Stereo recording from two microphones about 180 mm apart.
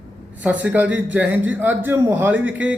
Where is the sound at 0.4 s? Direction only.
10° right (ahead or behind).